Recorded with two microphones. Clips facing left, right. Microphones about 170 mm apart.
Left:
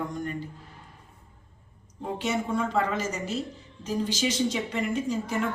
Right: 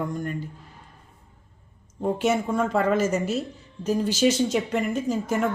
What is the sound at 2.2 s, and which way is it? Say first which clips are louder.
Speech: right 3 dB; 50° right (ahead or behind).